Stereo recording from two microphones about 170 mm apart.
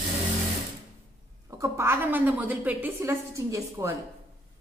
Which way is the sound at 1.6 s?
15° right (ahead or behind).